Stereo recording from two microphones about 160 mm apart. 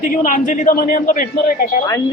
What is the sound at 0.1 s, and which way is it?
A man's voice, 60° left (ahead or behind).